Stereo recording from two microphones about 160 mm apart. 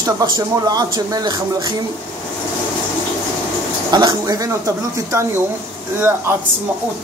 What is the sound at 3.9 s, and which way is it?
Speech, 25° right (ahead or behind).